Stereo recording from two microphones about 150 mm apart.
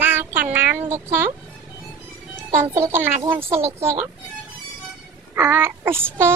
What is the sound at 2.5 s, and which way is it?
Child singing, 20° right (ahead or behind).